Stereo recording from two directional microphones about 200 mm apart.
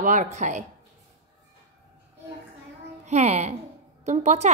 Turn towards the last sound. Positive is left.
turn(degrees=-35)  # may be behind; listen again after turning